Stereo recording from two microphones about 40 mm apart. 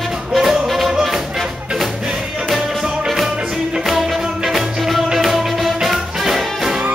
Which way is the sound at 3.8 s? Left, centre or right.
Centre.